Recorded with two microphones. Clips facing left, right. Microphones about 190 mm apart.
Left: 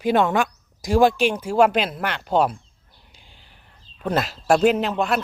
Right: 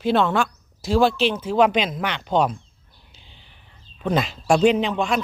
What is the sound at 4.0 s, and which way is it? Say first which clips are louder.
Speech: right 1 dB; 5° left (ahead or behind).